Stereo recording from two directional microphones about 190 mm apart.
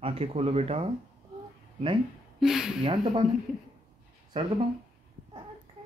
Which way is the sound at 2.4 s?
5° right (ahead or behind).